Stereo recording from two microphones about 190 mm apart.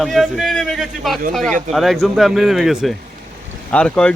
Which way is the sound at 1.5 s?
40° right (ahead or behind).